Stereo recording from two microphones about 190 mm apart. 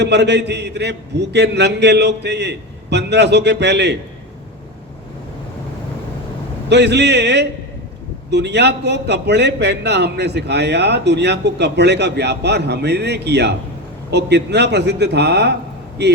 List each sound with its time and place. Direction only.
0.0 s a man's voice: 65° right (ahead or behind)
6.7 s a man's voice: 65° right (ahead or behind)